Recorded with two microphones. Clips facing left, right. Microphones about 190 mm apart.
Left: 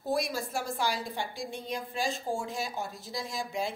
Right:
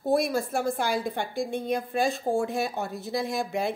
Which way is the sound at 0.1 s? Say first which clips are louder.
Right 6 dB; 55° right (ahead or behind).